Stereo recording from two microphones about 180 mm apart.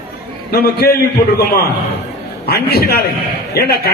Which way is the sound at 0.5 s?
55° left (ahead or behind).